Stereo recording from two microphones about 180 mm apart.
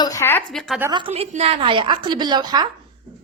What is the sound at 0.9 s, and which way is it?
A woman's voice, 25° right (ahead or behind).